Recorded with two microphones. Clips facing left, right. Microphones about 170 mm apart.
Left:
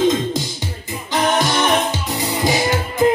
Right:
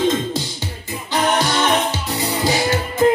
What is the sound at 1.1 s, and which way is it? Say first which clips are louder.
Music: left 1 dB; 20° left (ahead or behind).